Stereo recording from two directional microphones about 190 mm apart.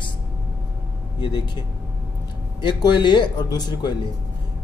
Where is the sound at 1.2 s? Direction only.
25° left (ahead or behind).